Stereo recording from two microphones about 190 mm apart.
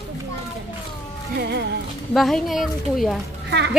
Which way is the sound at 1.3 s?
60° right (ahead or behind).